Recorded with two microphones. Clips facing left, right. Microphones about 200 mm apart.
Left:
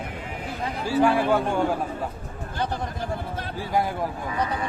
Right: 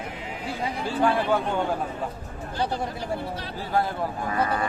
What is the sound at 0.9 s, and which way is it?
Speech, 10° left (ahead or behind).